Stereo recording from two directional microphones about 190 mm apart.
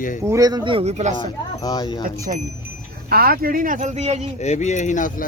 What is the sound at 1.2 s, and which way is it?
Speech, 20° left (ahead or behind).